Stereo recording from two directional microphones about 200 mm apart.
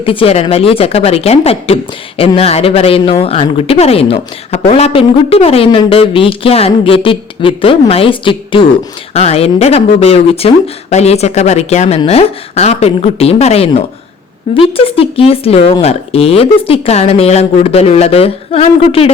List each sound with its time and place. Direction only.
0.0 s speech: 25° left (ahead or behind)